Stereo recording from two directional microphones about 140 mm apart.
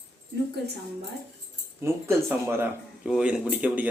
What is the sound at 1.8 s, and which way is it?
Speech, 15° right (ahead or behind).